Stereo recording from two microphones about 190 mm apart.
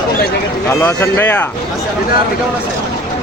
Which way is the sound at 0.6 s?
10° left (ahead or behind).